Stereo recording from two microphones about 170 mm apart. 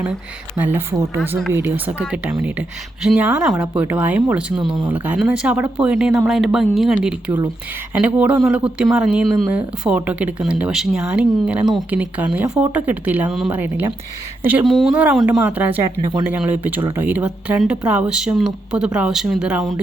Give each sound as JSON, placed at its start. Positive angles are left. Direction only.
{"t": 0.5, "sound": "speech", "side_deg": -10}
{"t": 16.0, "sound": "speech", "side_deg": -20}
{"t": 16.3, "sound": "speech", "side_deg": -10}